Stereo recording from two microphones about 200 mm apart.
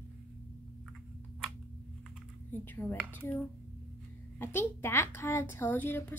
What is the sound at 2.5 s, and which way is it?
A child's voice, 10° left (ahead or behind).